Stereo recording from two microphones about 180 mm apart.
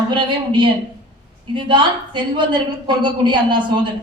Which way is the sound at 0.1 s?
25° right (ahead or behind).